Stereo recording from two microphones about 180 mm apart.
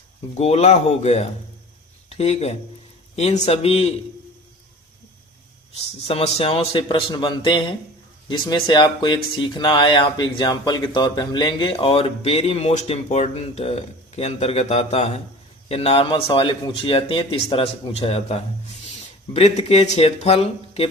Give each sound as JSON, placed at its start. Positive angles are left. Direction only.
{"t": 0.3, "sound": "a man's voice", "side_deg": 35}
{"t": 6.1, "sound": "a man's voice", "side_deg": 35}